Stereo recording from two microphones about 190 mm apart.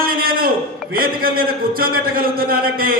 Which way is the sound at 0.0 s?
50° right (ahead or behind).